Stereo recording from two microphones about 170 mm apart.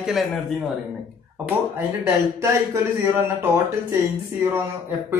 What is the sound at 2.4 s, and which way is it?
Speech, 15° right (ahead or behind).